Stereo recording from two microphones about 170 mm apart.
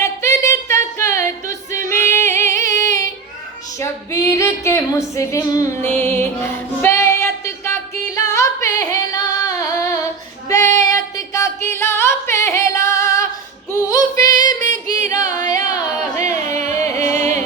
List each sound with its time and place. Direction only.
0.0 s music: 15° left (ahead or behind)
10.8 s singing: 20° left (ahead or behind)
13.8 s female singing: 20° left (ahead or behind)
14.7 s yodeling: 20° left (ahead or behind)
15.7 s a sound: 20° left (ahead or behind)
16.7 s music: 15° left (ahead or behind)